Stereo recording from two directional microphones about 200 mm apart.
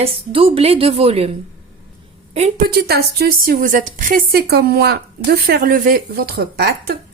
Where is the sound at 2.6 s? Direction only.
50° right (ahead or behind).